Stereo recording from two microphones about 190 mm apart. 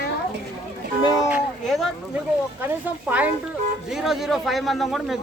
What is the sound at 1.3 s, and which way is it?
A man's voice, centre (ahead or behind).